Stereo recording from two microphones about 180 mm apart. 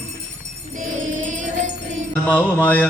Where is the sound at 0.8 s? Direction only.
45° right (ahead or behind).